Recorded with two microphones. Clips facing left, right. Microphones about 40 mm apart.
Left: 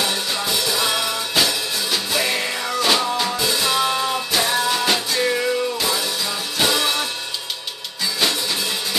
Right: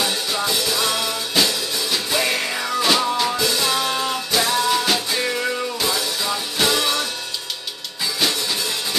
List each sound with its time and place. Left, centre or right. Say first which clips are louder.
0.0 s music: even; centre
2.1 s music: right 1 dB; centre